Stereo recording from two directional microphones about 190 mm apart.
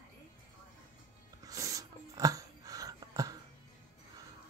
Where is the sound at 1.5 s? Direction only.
15° right (ahead or behind).